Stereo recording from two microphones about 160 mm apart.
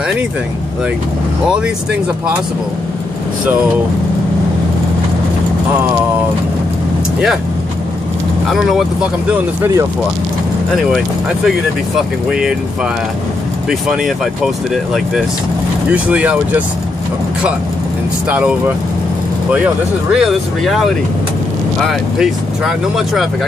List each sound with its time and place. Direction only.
8.5 s speech: centre (ahead or behind)
12.3 s speech: 5° right (ahead or behind)
13.7 s speech: 5° right (ahead or behind)
15.9 s speech: 10° right (ahead or behind)
18.3 s speech: 5° right (ahead or behind)